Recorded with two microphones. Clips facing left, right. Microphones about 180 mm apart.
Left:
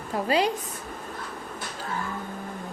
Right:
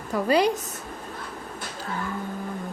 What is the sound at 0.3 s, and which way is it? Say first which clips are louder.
Speech: right 3 dB; 45° right (ahead or behind).